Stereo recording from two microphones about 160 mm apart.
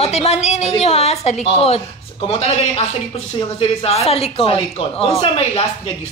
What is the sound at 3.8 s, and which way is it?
Speech, 40° left (ahead or behind).